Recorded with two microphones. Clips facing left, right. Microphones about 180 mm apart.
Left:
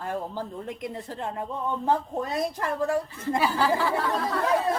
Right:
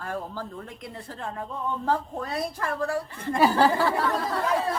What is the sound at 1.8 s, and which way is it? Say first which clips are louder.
Speech: left 2 dB; 20° left (ahead or behind).